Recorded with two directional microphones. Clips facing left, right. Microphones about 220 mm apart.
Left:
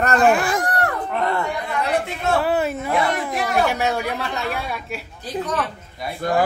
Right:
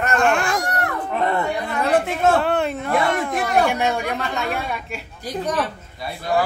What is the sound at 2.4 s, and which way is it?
A woman's voice, 5° left (ahead or behind).